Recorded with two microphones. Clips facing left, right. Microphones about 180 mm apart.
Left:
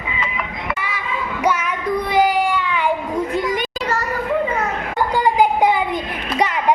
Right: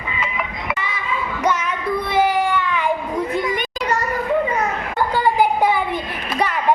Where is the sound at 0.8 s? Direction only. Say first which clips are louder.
Even; 10° left (ahead or behind).